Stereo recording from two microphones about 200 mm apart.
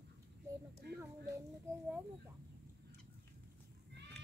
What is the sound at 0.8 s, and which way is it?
Speech, 50° right (ahead or behind).